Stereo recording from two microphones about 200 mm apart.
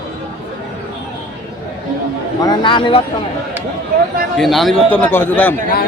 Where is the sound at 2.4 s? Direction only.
25° left (ahead or behind).